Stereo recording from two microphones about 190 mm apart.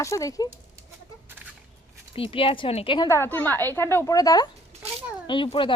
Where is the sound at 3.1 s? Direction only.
10° left (ahead or behind).